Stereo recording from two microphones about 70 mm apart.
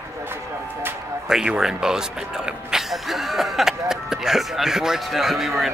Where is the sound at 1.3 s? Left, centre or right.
Centre.